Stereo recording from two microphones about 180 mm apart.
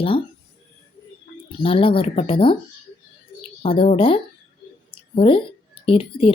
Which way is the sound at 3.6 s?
30° left (ahead or behind).